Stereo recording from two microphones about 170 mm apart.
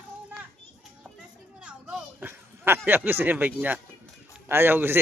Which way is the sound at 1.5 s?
5° right (ahead or behind).